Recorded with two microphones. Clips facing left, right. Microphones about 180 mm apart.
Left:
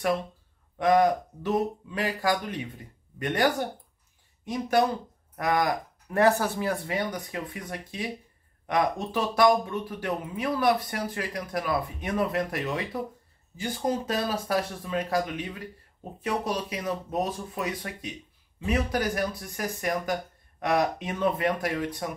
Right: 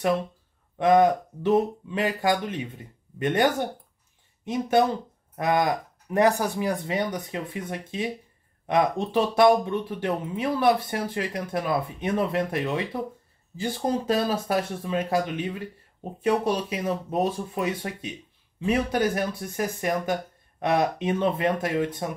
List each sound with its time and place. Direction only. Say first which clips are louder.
0.7 s speech: right 3 dB; 25° right (ahead or behind)